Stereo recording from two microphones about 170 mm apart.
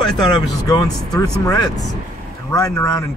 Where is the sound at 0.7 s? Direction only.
20° left (ahead or behind).